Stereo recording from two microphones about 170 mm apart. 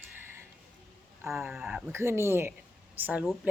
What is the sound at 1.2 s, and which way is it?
Speech, 15° right (ahead or behind).